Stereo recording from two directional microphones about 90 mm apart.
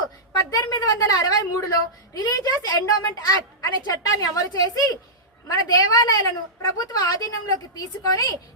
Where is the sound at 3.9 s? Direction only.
40° left (ahead or behind).